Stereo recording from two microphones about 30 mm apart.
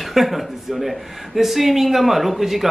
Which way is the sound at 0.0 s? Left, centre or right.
Centre.